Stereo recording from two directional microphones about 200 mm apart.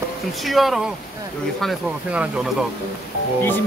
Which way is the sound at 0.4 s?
Centre (ahead or behind).